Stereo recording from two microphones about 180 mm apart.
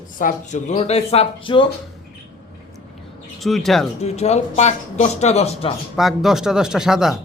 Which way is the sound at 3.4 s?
Centre (ahead or behind).